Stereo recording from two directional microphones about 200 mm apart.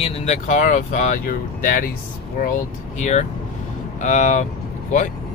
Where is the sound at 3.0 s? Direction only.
35° left (ahead or behind).